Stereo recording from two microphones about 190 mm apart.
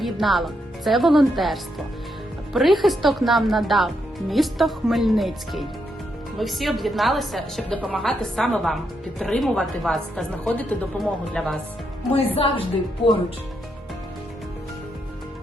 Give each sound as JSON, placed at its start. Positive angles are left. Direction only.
{"t": 0.0, "sound": "speech", "side_deg": 0}
{"t": 12.1, "sound": "a woman's voice", "side_deg": 30}